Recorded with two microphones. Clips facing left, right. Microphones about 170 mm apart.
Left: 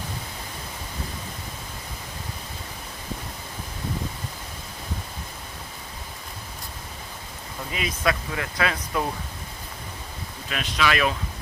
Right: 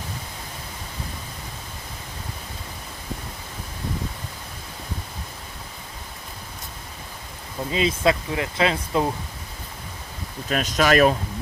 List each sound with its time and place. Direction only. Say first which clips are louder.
7.7 s speech: right 5 dB; 25° right (ahead or behind)
10.5 s speech: right 6 dB; 45° right (ahead or behind)